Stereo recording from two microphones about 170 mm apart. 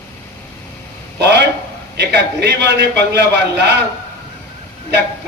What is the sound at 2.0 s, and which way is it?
A man's voice, 85° right.